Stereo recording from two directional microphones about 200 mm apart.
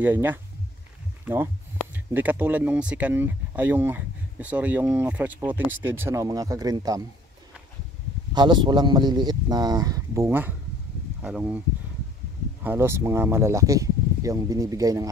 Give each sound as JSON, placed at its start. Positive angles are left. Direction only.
{"t": 0.0, "sound": "speech", "side_deg": -10}
{"t": 8.3, "sound": "speech", "side_deg": -20}
{"t": 12.6, "sound": "speech", "side_deg": -15}